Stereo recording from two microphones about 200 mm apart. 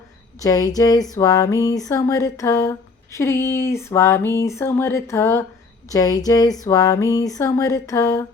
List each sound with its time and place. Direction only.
0.3 s speech: 15° left (ahead or behind)